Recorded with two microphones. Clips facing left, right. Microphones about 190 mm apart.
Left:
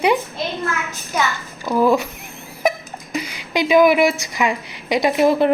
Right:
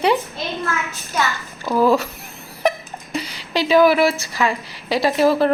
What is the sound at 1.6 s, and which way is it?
Speech, 15° left (ahead or behind).